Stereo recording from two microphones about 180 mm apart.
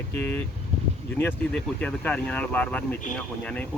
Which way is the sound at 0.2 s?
10° left (ahead or behind).